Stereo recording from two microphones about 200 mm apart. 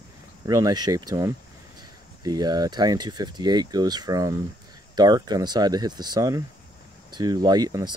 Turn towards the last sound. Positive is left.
turn(degrees=-20)  # may be behind; listen again after turning